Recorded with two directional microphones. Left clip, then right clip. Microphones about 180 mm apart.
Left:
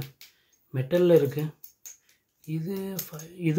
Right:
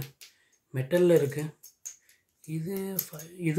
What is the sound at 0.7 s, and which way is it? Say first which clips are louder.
A man's voice: left 2 dB; 55° left (ahead or behind).